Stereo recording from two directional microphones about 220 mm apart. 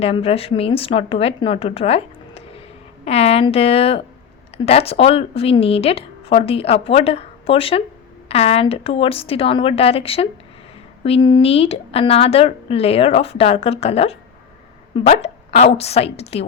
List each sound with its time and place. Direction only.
0.0 s a woman's voice: 25° left (ahead or behind)